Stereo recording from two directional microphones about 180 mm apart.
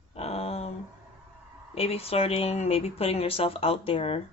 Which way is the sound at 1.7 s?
35° left (ahead or behind).